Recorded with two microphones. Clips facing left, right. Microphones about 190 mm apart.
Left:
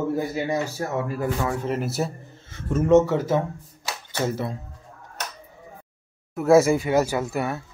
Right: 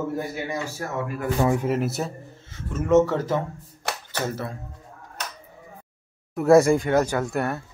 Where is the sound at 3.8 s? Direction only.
60° right (ahead or behind).